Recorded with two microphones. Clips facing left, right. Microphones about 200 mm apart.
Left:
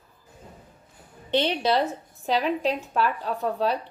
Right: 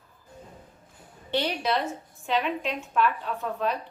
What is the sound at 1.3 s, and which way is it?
A woman's voice, 25° left (ahead or behind).